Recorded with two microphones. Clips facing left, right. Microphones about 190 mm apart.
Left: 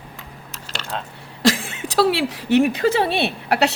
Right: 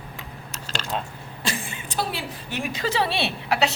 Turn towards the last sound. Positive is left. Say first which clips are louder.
# left 4 dB
turn(degrees=55)  # may be behind; listen again after turning